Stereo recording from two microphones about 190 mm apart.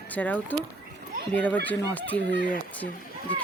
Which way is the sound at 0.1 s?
10° left (ahead or behind).